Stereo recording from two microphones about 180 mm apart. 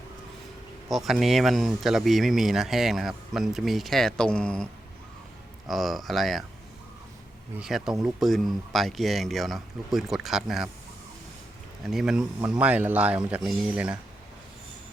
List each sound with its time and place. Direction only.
0.9 s speech: centre (ahead or behind)
7.6 s speech: centre (ahead or behind)
11.9 s speech: 5° right (ahead or behind)